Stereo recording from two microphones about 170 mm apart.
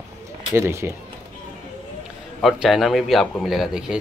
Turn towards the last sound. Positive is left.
turn(degrees=-5)  # may be behind; listen again after turning